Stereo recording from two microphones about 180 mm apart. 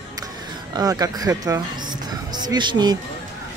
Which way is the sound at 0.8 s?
20° right (ahead or behind).